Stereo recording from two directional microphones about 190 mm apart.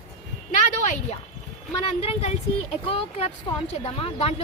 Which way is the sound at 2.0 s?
30° left (ahead or behind).